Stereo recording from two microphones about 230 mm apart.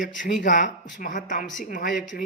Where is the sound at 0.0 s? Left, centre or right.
Left.